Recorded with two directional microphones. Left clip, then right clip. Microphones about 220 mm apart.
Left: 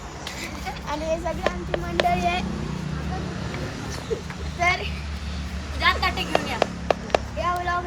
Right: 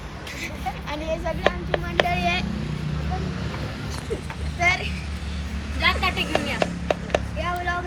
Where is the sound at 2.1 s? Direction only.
35° left (ahead or behind).